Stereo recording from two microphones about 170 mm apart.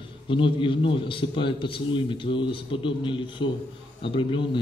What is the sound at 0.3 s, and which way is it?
A man's voice, 30° left (ahead or behind).